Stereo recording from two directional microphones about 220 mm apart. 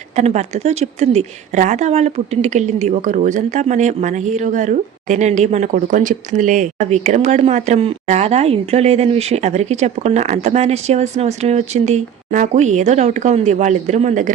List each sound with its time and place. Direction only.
0.2 s a woman's voice: 30° right (ahead or behind)